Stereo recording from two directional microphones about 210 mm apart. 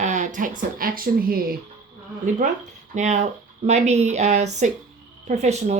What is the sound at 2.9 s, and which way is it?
Speech, 35° right (ahead or behind).